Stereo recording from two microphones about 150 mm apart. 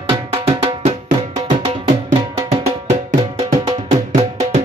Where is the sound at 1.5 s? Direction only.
50° right (ahead or behind).